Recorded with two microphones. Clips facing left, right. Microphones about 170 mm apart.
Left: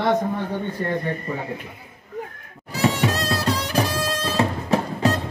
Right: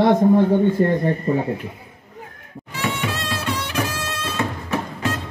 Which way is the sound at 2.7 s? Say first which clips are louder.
Left 4 dB; 40° left (ahead or behind).